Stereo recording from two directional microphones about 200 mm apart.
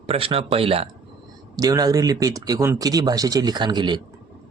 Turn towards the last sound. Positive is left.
turn(degrees=-20)  # may be behind; listen again after turning